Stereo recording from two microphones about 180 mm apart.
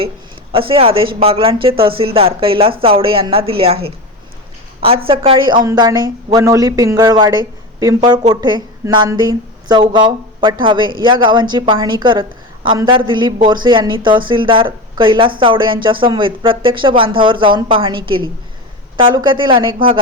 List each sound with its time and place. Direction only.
0.5 s speech: 30° right (ahead or behind)
5.0 s speech: 30° right (ahead or behind)